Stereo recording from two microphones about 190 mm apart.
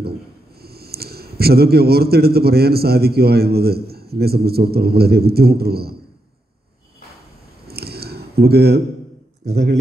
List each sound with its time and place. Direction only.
0.6 s a man's voice: 55° right (ahead or behind)
7.6 s a sound: 55° right (ahead or behind)
9.4 s a man's voice: 60° right (ahead or behind)